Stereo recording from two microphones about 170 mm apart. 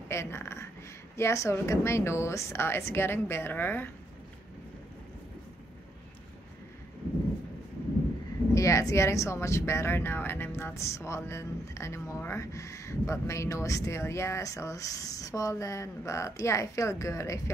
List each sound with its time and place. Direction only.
0.1 s speech: 15° left (ahead or behind)
8.5 s speech: 20° left (ahead or behind)